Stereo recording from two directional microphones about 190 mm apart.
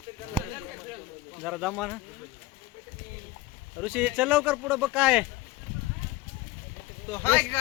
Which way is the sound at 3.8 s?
5° right (ahead or behind).